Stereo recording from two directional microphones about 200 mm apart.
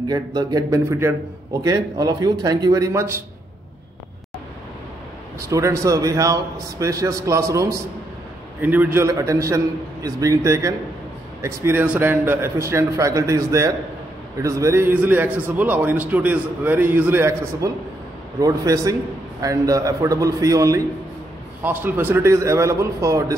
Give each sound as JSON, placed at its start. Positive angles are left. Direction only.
{"t": 0.1, "sound": "speech", "side_deg": -20}
{"t": 5.5, "sound": "a man's voice", "side_deg": -15}